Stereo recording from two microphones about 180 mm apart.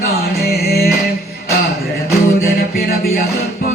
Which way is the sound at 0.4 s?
60° left (ahead or behind).